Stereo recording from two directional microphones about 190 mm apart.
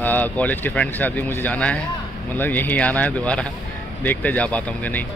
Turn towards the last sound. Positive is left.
turn(degrees=10)  # may be behind; listen again after turning